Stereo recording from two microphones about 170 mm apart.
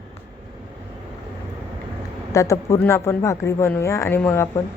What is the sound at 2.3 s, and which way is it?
Speech, 20° left (ahead or behind).